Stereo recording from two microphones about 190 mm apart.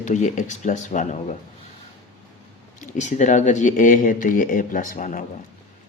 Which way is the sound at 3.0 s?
40° left (ahead or behind).